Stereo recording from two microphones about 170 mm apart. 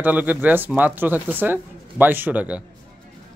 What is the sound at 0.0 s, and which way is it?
Speech, 10° right (ahead or behind).